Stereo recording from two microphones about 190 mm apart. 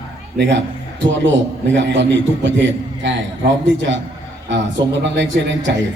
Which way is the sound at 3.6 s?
75° right (ahead or behind).